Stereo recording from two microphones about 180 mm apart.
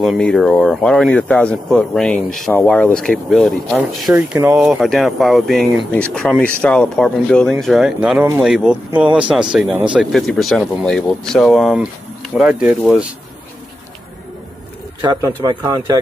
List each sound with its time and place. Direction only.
0.0 s speech: centre (ahead or behind)
15.0 s a man's voice: 20° right (ahead or behind)